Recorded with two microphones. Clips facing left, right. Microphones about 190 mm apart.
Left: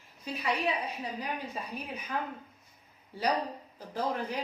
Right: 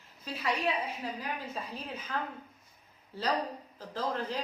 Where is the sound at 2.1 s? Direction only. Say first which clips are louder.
Left 1 dB; 15° left (ahead or behind).